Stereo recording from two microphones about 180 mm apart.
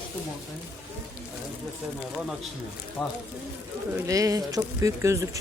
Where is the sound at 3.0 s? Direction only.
Centre (ahead or behind).